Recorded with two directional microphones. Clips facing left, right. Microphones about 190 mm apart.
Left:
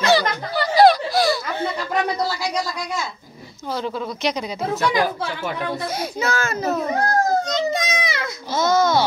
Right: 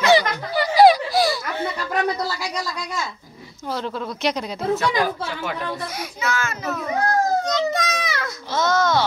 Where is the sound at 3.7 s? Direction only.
Centre (ahead or behind).